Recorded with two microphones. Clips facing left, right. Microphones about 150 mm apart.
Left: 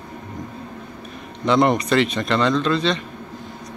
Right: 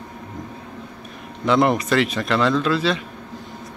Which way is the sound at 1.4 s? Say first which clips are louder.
Left 1 dB; centre (ahead or behind).